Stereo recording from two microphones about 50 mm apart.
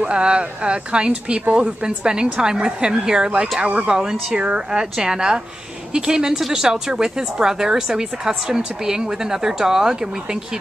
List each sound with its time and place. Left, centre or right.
0.0 s speech: centre